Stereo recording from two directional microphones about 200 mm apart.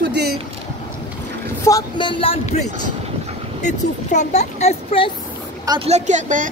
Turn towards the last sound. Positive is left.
turn(degrees=-40)  # may be behind; listen again after turning